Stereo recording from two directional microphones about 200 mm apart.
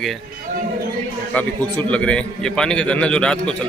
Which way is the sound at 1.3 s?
5° left (ahead or behind).